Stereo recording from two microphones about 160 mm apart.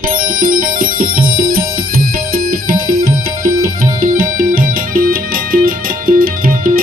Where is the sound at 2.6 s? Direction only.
65° right (ahead or behind).